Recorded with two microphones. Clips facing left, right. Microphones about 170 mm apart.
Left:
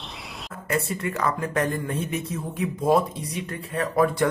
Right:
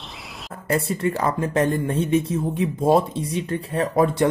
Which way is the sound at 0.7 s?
30° right (ahead or behind).